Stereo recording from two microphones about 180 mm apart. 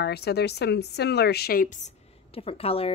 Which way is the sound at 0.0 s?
65° left (ahead or behind).